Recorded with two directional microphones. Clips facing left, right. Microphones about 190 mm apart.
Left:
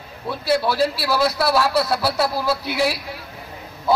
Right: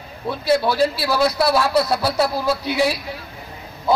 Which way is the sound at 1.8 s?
20° right (ahead or behind).